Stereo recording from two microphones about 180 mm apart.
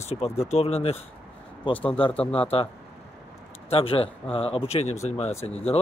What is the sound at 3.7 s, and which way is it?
Speech, 30° left (ahead or behind).